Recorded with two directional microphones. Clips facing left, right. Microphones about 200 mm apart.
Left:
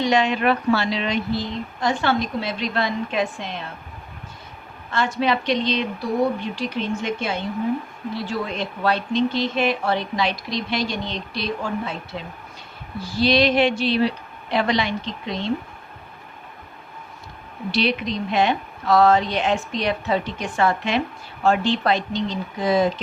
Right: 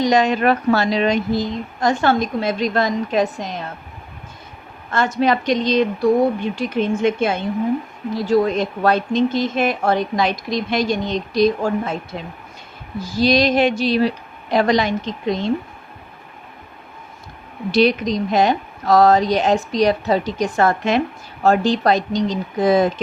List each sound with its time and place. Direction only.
0.0 s speech: 40° right (ahead or behind)
4.9 s speech: 45° right (ahead or behind)
13.0 s speech: 45° right (ahead or behind)
17.7 s speech: 45° right (ahead or behind)